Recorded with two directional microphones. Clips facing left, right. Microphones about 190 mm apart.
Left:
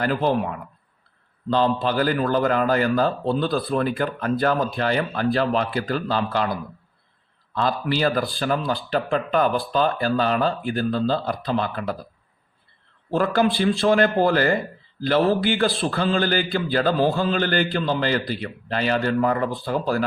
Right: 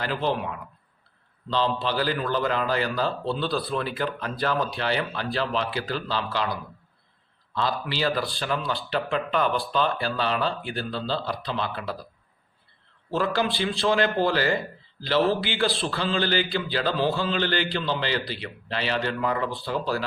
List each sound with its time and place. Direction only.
0.0 s a man's voice: 45° left (ahead or behind)
13.1 s a man's voice: 50° left (ahead or behind)